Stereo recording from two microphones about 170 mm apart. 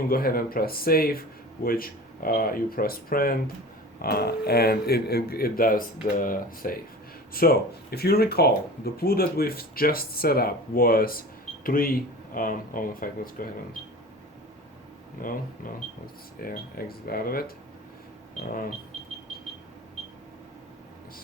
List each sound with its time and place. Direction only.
0.1 s speech: 60° left (ahead or behind)
15.2 s speech: 55° left (ahead or behind)
16.4 s speech: 60° left (ahead or behind)